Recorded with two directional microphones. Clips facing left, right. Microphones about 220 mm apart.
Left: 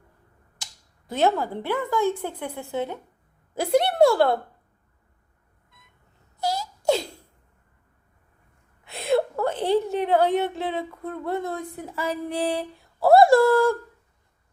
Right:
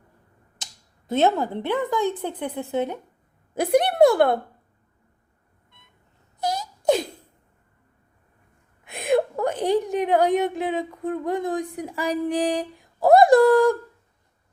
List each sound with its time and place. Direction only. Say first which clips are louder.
0.6 s a woman's voice: right 1 dB; 20° right (ahead or behind)
6.4 s wail: right 1 dB; 20° right (ahead or behind)
8.8 s a woman's voice: right 1 dB; 15° right (ahead or behind)